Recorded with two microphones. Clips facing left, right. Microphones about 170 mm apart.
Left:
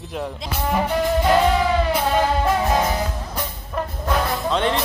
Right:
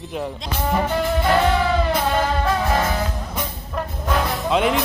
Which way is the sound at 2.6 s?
20° left (ahead or behind).